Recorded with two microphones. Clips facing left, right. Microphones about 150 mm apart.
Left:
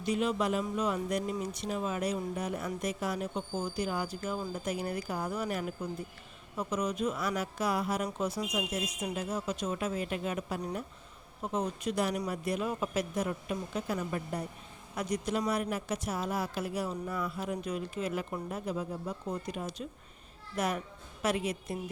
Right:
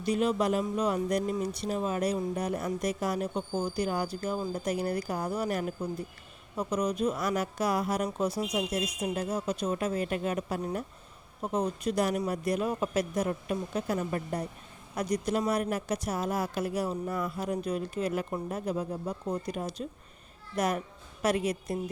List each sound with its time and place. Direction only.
0.0 s a man's voice: 40° right (ahead or behind)